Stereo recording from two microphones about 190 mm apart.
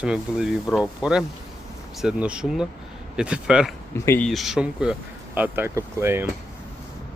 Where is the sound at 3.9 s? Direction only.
15° left (ahead or behind).